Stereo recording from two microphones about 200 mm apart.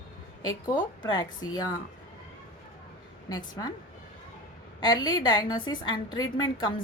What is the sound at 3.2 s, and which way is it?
Speech, 20° left (ahead or behind).